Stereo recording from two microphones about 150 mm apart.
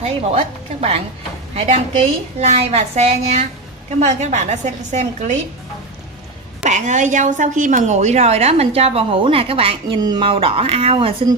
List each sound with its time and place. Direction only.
0.0 s a woman's voice: 40° right (ahead or behind)
6.6 s a woman's voice: 55° right (ahead or behind); by 11.1 s 40° right (ahead or behind)